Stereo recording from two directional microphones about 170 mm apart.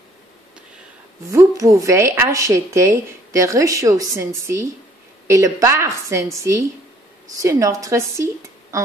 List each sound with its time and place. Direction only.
1.3 s speech: 20° right (ahead or behind)